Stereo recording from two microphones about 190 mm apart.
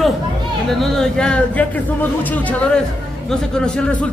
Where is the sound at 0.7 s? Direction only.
Centre (ahead or behind).